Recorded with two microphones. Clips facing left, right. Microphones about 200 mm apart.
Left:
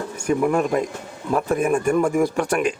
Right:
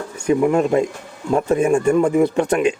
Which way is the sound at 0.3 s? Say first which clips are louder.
Right 4 dB; 20° right (ahead or behind).